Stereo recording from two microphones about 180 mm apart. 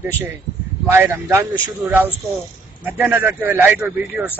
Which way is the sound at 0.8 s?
15° right (ahead or behind).